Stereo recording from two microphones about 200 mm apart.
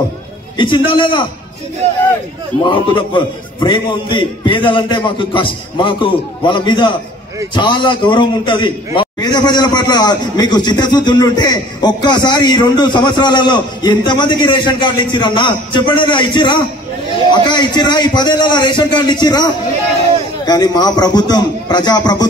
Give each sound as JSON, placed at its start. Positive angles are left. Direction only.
{"t": 0.6, "sound": "a man's voice", "side_deg": 25}
{"t": 2.6, "sound": "a man's voice", "side_deg": 25}